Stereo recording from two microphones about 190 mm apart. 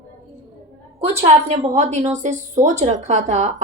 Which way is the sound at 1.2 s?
35° right (ahead or behind).